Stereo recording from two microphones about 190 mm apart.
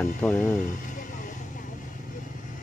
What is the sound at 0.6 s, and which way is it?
Vehicle, 45° left (ahead or behind).